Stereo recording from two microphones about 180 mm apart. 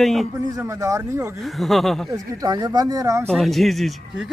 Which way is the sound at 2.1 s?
20° right (ahead or behind).